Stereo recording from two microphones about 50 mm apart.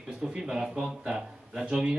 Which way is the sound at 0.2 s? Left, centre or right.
Centre.